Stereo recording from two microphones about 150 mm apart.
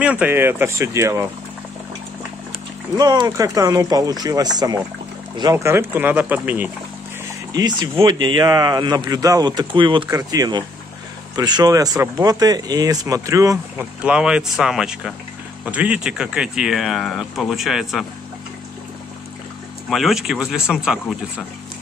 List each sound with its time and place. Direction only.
0.0 s speech: 10° right (ahead or behind)
3.0 s speech: 25° right (ahead or behind)
7.5 s speech: 25° right (ahead or behind)
13.7 s speech: 5° right (ahead or behind)
19.9 s speech: centre (ahead or behind)